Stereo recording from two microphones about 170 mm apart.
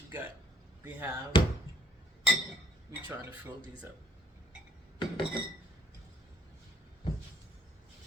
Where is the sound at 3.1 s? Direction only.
10° right (ahead or behind).